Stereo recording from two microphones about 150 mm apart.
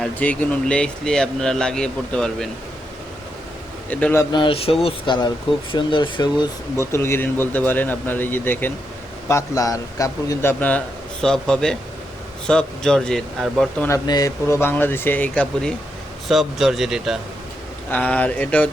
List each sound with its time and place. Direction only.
0.0 s speech: 10° left (ahead or behind)
3.8 s speech: 15° left (ahead or behind)
4.3 s speech: 35° left (ahead or behind)
6.7 s a man's voice: 15° left (ahead or behind)
10.6 s speech: 10° left (ahead or behind)
13.8 s speech: 20° left (ahead or behind)
16.3 s speech: centre (ahead or behind)
17.9 s speech: 10° left (ahead or behind)